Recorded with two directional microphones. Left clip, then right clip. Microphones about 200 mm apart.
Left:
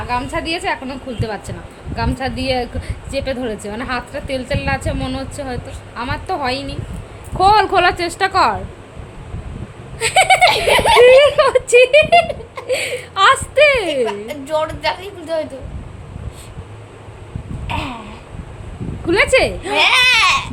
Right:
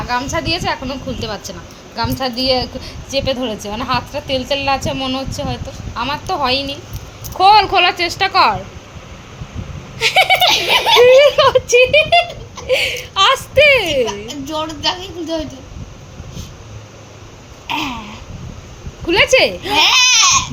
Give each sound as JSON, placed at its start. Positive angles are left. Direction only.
{"t": 0.1, "sound": "a woman's voice", "side_deg": 10}
{"t": 10.0, "sound": "a woman's voice", "side_deg": 10}
{"t": 14.1, "sound": "a woman's voice", "side_deg": 25}
{"t": 19.0, "sound": "a woman's voice", "side_deg": 10}
{"t": 19.7, "sound": "speech", "side_deg": 25}